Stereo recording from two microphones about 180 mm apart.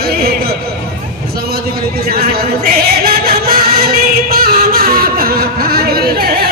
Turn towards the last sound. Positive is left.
turn(degrees=-55)  # may be behind; listen again after turning